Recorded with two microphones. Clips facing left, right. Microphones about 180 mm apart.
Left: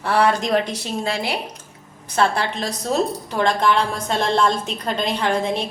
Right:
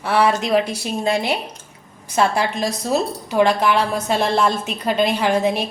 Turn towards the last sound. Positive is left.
turn(degrees=-10)  # may be behind; listen again after turning